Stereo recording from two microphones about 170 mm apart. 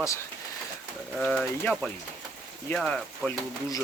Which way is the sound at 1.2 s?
5° left (ahead or behind).